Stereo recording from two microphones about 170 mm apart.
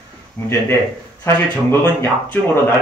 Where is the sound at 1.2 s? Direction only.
15° left (ahead or behind).